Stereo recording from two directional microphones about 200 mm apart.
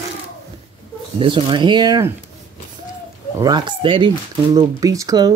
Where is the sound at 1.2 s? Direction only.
25° right (ahead or behind).